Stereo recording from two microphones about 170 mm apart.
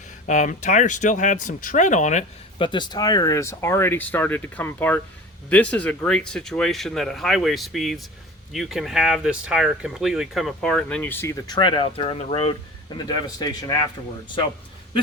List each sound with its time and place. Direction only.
0.3 s speech: 45° left (ahead or behind)
2.6 s speech: 25° left (ahead or behind)
11.4 s a man's voice: 25° left (ahead or behind)